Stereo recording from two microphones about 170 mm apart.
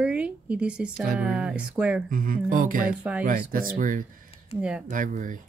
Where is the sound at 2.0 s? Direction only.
55° right (ahead or behind).